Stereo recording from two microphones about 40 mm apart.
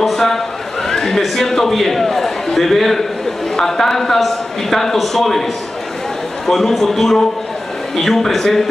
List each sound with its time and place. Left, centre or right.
0.0 s a sound: centre
1.2 s a man's voice: centre
6.4 s a man's voice: centre